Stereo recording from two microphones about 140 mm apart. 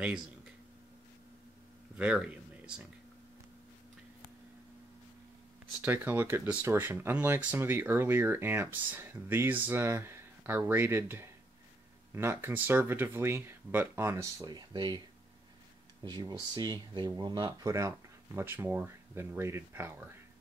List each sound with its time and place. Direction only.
2.0 s a sound: 5° right (ahead or behind)
5.8 s speech: 15° right (ahead or behind); by 15.0 s 30° right (ahead or behind)
16.0 s speech: 30° right (ahead or behind)